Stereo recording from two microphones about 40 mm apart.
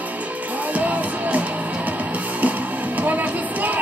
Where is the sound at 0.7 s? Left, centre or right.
Right.